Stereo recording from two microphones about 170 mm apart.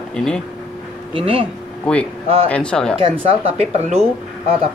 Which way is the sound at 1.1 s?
30° right (ahead or behind).